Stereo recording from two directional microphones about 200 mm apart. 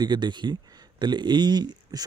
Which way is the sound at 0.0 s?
20° right (ahead or behind).